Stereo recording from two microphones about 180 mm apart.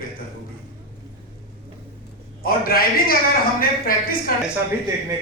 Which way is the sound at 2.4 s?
55° left (ahead or behind).